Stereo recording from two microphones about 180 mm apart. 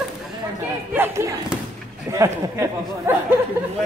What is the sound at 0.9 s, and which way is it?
Speech, 10° right (ahead or behind).